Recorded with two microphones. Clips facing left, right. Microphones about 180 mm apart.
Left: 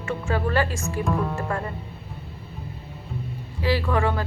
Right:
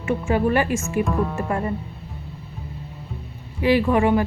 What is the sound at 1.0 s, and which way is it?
Speech, centre (ahead or behind).